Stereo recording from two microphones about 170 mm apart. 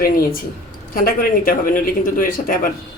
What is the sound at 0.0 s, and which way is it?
Speech, 60° left (ahead or behind).